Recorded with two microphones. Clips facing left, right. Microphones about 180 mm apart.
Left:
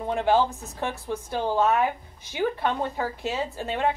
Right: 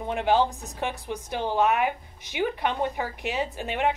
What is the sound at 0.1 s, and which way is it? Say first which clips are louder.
Speech: left 1 dB; 20° right (ahead or behind).